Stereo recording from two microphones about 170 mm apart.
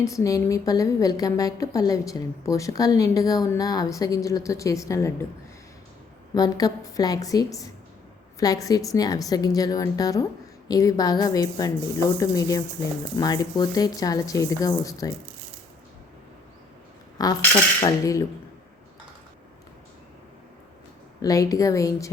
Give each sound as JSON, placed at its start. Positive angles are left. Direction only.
{"t": 0.0, "sound": "a woman's voice", "side_deg": 20}
{"t": 6.3, "sound": "a woman's voice", "side_deg": 20}
{"t": 17.5, "sound": "a woman's voice", "side_deg": 15}
{"t": 21.2, "sound": "a woman's voice", "side_deg": 20}